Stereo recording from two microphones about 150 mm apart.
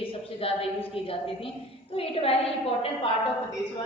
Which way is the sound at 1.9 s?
40° left (ahead or behind).